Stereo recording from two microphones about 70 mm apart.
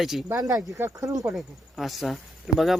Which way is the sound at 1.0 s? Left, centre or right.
Right.